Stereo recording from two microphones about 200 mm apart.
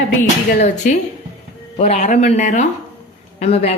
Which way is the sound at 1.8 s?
35° left (ahead or behind).